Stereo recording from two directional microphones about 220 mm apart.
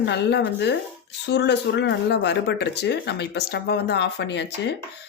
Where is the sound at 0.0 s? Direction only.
50° left (ahead or behind).